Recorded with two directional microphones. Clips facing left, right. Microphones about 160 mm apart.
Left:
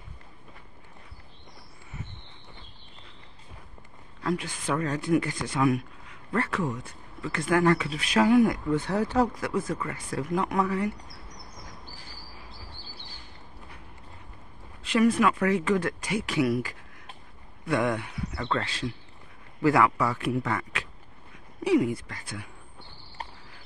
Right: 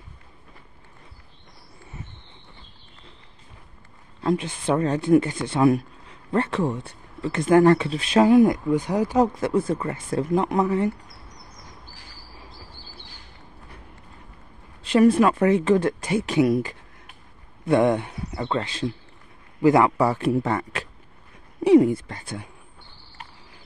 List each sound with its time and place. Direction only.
4.2 s speech: 25° right (ahead or behind)
9.3 s speech: 25° right (ahead or behind)
14.8 s speech: 30° right (ahead or behind)
23.2 s a sound: 35° left (ahead or behind)